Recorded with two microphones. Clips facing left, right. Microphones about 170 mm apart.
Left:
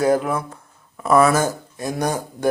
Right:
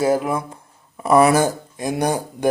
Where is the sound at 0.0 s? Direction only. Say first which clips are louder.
Even; 5° right (ahead or behind).